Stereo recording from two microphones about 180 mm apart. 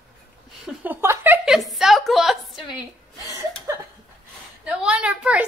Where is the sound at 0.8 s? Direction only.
10° right (ahead or behind).